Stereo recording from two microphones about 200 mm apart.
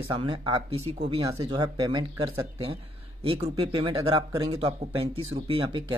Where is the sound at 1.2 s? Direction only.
20° right (ahead or behind).